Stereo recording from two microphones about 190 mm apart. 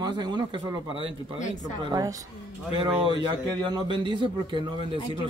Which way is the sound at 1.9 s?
20° right (ahead or behind).